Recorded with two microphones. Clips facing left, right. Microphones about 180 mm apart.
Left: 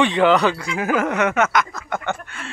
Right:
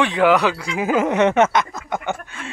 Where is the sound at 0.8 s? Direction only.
20° right (ahead or behind).